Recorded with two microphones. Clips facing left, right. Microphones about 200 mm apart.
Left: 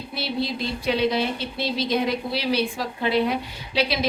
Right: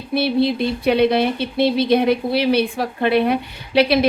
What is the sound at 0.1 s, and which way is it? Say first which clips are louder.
A woman's voice: right 10 dB; 60° right (ahead or behind).